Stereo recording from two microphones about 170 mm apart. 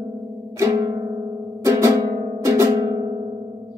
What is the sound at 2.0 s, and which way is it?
Music, 35° right (ahead or behind).